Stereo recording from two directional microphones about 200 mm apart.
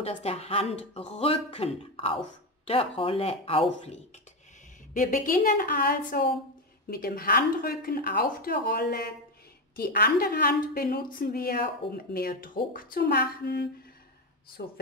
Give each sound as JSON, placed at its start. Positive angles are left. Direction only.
{"t": 0.0, "sound": "speech", "side_deg": 30}
{"t": 4.9, "sound": "a woman's voice", "side_deg": 40}